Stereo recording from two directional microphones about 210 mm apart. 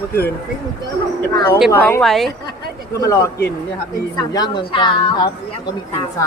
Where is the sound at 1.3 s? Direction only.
20° left (ahead or behind); by 2.3 s centre (ahead or behind).